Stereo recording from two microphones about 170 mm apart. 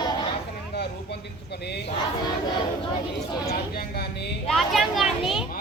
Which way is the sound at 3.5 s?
65° left (ahead or behind).